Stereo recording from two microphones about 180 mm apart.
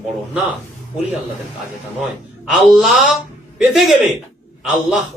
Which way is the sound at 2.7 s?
Centre (ahead or behind).